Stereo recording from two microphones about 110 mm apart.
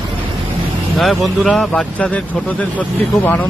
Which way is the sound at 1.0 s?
Centre (ahead or behind).